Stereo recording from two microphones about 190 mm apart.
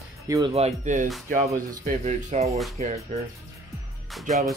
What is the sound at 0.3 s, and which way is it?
Speech, 25° right (ahead or behind).